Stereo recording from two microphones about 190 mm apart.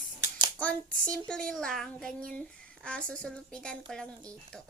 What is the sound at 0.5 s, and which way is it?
Speech, 5° left (ahead or behind).